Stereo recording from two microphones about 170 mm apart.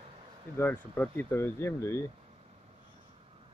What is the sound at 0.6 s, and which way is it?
Speech, 10° left (ahead or behind).